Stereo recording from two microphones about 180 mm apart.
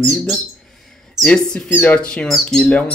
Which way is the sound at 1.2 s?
5° left (ahead or behind).